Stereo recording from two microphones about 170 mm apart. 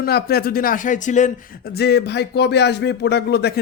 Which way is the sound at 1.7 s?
70° left (ahead or behind).